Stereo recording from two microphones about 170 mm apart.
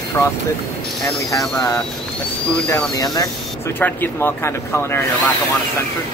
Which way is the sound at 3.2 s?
15° left (ahead or behind).